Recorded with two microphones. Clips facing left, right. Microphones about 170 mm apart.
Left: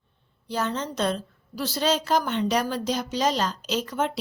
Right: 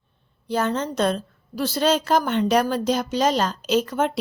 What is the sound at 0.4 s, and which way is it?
A woman's voice, 50° right (ahead or behind).